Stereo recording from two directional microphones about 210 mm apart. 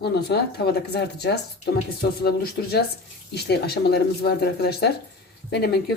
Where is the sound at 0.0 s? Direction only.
50° left (ahead or behind).